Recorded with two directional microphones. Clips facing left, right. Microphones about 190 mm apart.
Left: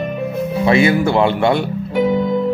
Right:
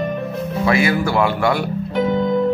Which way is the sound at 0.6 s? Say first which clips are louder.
Left 4 dB; 25° left (ahead or behind).